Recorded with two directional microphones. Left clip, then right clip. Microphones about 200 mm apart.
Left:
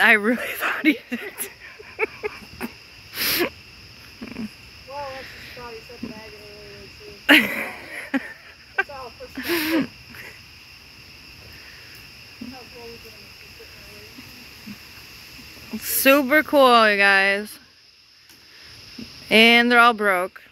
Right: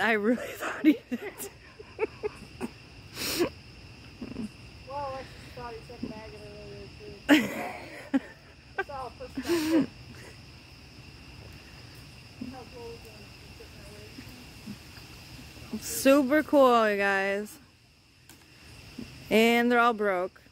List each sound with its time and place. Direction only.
0.0 s speech: 5° right (ahead or behind)
2.0 s a sound: 5° right (ahead or behind)
3.2 s wheeze: 5° right (ahead or behind)
7.2 s a sound: 5° right (ahead or behind)
9.3 s speech: 5° right (ahead or behind)
15.8 s speech: 5° right (ahead or behind)
19.2 s speech: 5° right (ahead or behind)